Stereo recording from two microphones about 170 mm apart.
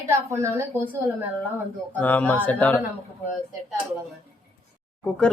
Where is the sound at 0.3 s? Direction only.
15° right (ahead or behind).